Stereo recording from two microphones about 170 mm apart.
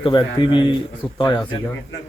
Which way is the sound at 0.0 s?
25° left (ahead or behind).